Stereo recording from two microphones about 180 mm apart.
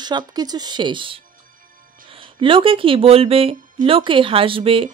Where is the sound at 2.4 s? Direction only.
30° right (ahead or behind).